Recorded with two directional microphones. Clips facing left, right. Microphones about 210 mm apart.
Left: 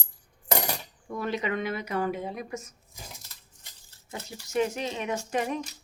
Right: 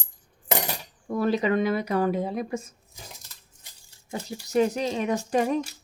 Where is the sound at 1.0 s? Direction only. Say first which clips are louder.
Right 7 dB; 35° right (ahead or behind).